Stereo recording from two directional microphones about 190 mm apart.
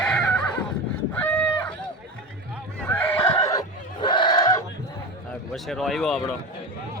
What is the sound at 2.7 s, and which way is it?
Neigh, 10° left (ahead or behind).